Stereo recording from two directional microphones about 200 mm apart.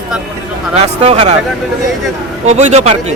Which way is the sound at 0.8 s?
35° right (ahead or behind).